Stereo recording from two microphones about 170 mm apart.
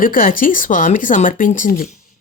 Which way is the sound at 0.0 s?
55° left (ahead or behind).